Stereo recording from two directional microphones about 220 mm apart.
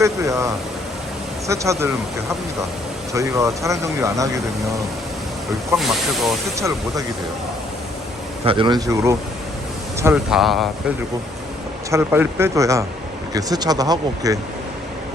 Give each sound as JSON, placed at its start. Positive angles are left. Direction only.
{"t": 0.0, "sound": "speech", "side_deg": -15}
{"t": 3.1, "sound": "speech", "side_deg": -15}
{"t": 5.7, "sound": "speech", "side_deg": 0}
{"t": 6.6, "sound": "speech", "side_deg": -15}
{"t": 8.4, "sound": "speech", "side_deg": -20}
{"t": 11.9, "sound": "speech", "side_deg": -10}